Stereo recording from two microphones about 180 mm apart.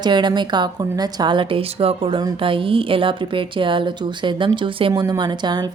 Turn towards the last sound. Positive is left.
turn(degrees=-25)  # may be behind; listen again after turning